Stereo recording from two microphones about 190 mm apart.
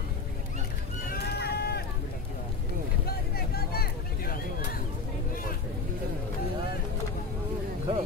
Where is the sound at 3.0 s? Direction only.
55° left (ahead or behind).